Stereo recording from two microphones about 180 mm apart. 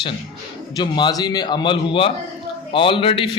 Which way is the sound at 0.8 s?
25° left (ahead or behind).